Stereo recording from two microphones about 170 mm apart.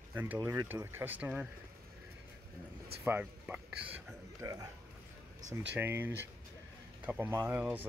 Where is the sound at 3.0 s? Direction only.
10° right (ahead or behind).